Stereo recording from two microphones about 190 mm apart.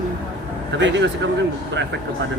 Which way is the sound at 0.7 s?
70° right (ahead or behind).